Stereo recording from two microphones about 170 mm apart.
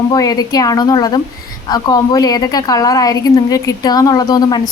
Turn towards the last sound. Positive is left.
turn(degrees=25)  # may be behind; listen again after turning